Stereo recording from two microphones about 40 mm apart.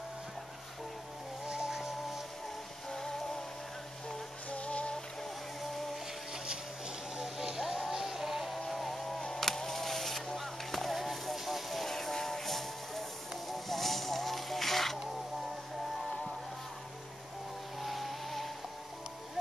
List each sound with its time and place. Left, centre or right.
1.5 s vehicle: centre
4.5 s music: left
6.3 s music: right
7.2 s music: centre
16.0 s vehicle: centre
17.7 s music: centre